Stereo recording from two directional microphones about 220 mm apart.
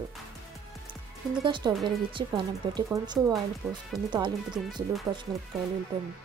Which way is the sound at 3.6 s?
5° right (ahead or behind).